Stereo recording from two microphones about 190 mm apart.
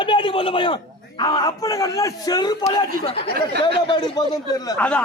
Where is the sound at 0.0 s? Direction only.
25° left (ahead or behind).